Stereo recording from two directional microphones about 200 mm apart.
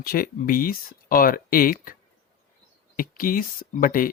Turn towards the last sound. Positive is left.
turn(degrees=45)  # may be behind; listen again after turning